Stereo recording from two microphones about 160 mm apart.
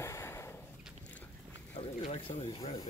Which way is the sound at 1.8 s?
40° left (ahead or behind).